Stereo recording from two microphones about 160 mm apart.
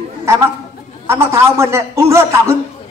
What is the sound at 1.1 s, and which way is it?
A man's voice, 15° right (ahead or behind).